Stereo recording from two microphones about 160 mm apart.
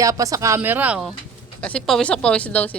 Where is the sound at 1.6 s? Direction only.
5° left (ahead or behind).